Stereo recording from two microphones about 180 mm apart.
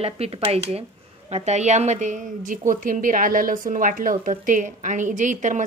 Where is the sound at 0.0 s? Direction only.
35° right (ahead or behind).